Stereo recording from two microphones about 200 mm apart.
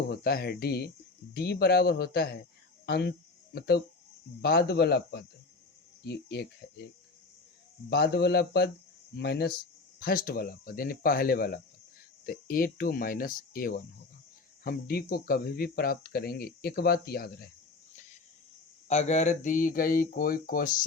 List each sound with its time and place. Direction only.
0.1 s speech: 50° left (ahead or behind)
2.8 s a sound: 55° left (ahead or behind)
4.4 s speech: 55° left (ahead or behind)
7.9 s speech: 50° left (ahead or behind)
18.9 s speech: 35° left (ahead or behind)